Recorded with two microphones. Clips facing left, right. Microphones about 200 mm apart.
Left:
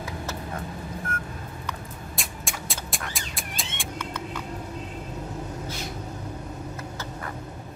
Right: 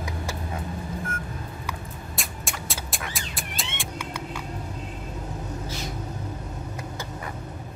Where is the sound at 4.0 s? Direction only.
10° right (ahead or behind).